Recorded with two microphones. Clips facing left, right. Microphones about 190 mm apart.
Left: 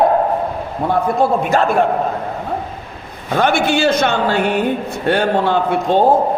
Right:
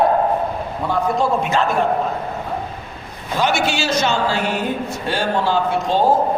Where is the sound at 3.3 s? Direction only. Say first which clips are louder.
Left 4 dB; 55° left (ahead or behind).